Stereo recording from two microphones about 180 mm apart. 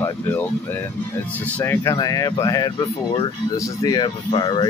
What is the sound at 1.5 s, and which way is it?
Speech, 15° left (ahead or behind).